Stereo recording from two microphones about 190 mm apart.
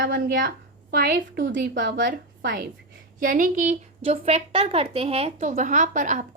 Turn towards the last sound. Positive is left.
turn(degrees=-40)  # may be behind; listen again after turning